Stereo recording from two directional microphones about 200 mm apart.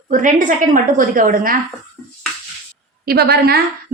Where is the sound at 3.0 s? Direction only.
50° right (ahead or behind).